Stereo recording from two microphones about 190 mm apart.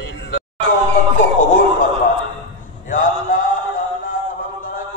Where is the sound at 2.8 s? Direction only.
45° left (ahead or behind).